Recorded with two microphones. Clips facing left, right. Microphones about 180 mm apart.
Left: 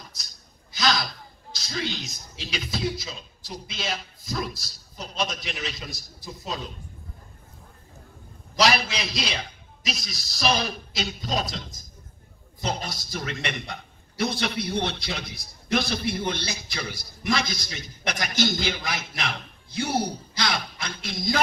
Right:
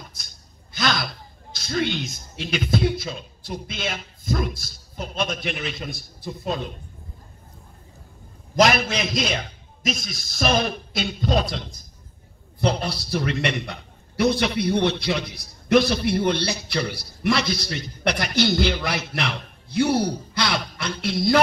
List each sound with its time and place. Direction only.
0.2 s a sound: 55° right (ahead or behind)
0.7 s a man's voice: 55° right (ahead or behind)
8.5 s a man's voice: 50° right (ahead or behind)